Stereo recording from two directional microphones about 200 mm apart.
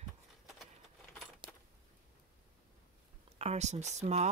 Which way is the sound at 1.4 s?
25° right (ahead or behind).